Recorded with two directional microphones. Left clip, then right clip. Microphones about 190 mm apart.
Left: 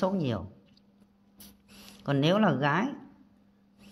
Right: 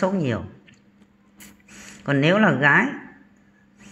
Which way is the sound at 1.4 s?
15° left (ahead or behind).